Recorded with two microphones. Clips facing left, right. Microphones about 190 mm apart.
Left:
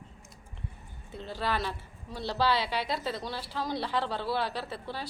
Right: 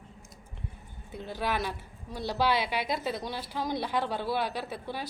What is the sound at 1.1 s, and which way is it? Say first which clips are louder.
A woman's voice: right 1 dB; 15° right (ahead or behind).